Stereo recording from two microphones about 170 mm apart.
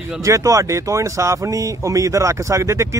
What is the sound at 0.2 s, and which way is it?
Speech, 20° right (ahead or behind).